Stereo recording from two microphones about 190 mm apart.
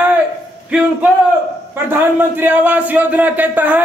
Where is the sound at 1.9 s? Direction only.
10° right (ahead or behind).